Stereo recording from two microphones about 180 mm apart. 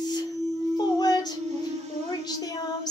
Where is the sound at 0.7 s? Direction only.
20° left (ahead or behind).